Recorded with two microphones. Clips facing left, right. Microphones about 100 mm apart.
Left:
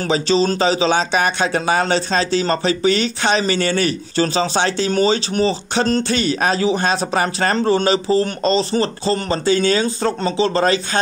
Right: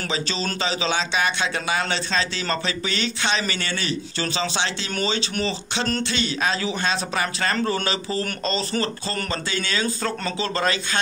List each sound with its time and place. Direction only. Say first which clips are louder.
0.1 s speech: left 12 dB; 35° left (ahead or behind)